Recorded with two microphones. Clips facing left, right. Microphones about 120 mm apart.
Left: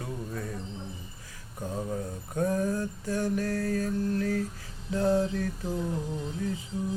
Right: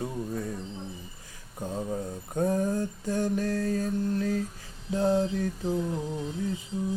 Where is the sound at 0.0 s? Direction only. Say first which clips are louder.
Right 4 dB; 35° right (ahead or behind).